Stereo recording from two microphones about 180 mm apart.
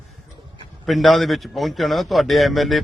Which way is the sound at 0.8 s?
Centre (ahead or behind).